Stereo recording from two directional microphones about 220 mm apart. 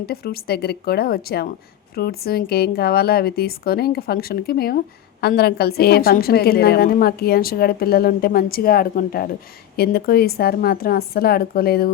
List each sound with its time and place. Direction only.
0.0 s a woman's voice: 45° left (ahead or behind)